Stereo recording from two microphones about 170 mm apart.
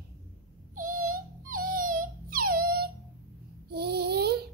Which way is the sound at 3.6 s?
70° right (ahead or behind).